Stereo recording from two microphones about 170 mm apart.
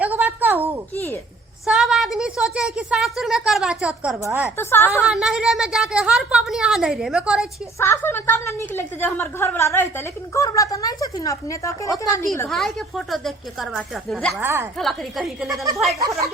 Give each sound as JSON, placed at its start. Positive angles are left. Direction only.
{"t": 0.0, "sound": "a sound", "side_deg": -10}
{"t": 1.6, "sound": "a woman's voice", "side_deg": -5}
{"t": 4.2, "sound": "a woman's voice", "side_deg": -15}
{"t": 4.5, "sound": "a woman's voice", "side_deg": 15}
{"t": 4.9, "sound": "a woman's voice", "side_deg": -5}
{"t": 7.8, "sound": "a woman's voice", "side_deg": 15}
{"t": 12.5, "sound": "a woman's voice", "side_deg": 0}
{"t": 14.4, "sound": "a woman's voice", "side_deg": -15}
{"t": 14.8, "sound": "a woman's voice", "side_deg": 0}
{"t": 15.4, "sound": "a woman's voice", "side_deg": -20}
{"t": 15.7, "sound": "a woman's voice", "side_deg": 0}
{"t": 16.0, "sound": "a woman's voice", "side_deg": -20}